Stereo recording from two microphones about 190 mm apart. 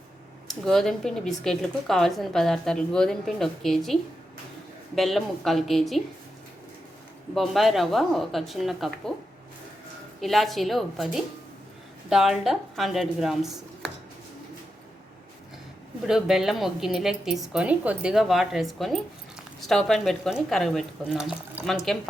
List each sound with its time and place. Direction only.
0.4 s speech: centre (ahead or behind)
4.9 s speech: centre (ahead or behind)
7.3 s speech: centre (ahead or behind)
10.2 s speech: centre (ahead or behind)
16.0 s speech: centre (ahead or behind)